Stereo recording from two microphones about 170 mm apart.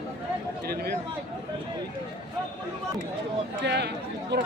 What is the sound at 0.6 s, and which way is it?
Speech, 65° right (ahead or behind).